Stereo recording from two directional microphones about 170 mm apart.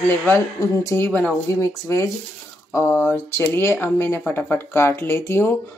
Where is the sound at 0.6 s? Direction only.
15° left (ahead or behind).